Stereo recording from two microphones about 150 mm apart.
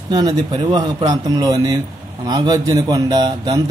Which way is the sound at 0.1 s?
25° right (ahead or behind).